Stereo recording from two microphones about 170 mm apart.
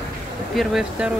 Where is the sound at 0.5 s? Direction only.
Centre (ahead or behind).